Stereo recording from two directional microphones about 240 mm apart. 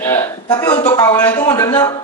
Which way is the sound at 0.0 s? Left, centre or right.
Centre.